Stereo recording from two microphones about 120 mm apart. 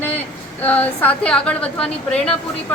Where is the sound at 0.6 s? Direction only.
15° left (ahead or behind).